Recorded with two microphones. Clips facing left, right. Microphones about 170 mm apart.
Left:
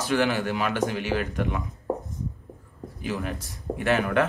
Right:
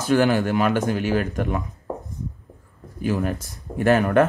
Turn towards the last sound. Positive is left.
turn(degrees=-45)  # may be behind; listen again after turning